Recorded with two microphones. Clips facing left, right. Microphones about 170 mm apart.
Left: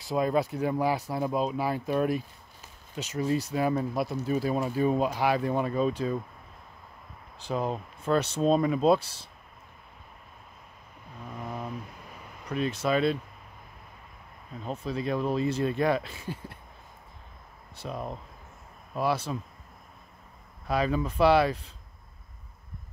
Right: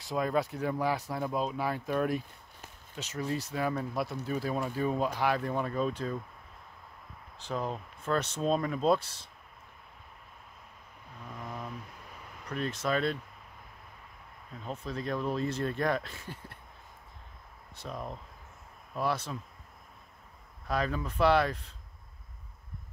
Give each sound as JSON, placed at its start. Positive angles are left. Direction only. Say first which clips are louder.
{"t": 0.0, "sound": "speech", "louder": "left 4 dB", "side_deg": 10}
{"t": 7.3, "sound": "speech", "louder": "left 4 dB", "side_deg": 10}
{"t": 8.4, "sound": "speech", "louder": "left 6 dB", "side_deg": 20}
{"t": 11.3, "sound": "a sound", "louder": "left 4 dB", "side_deg": 25}
{"t": 12.4, "sound": "speech", "louder": "left 4 dB", "side_deg": 10}
{"t": 14.6, "sound": "speech", "louder": "left 4 dB", "side_deg": 30}
{"t": 14.9, "sound": "speech", "louder": "left 4 dB", "side_deg": 10}
{"t": 18.9, "sound": "speech", "louder": "left 4 dB", "side_deg": 10}
{"t": 20.6, "sound": "speech", "louder": "left 5 dB", "side_deg": 10}